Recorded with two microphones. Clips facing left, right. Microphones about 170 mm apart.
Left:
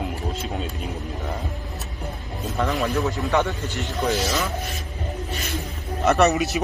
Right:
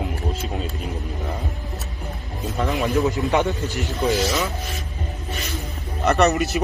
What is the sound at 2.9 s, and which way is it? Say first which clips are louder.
Speech: right 3 dB; 20° right (ahead or behind).